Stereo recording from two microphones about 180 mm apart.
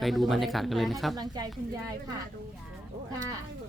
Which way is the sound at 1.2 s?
20° right (ahead or behind).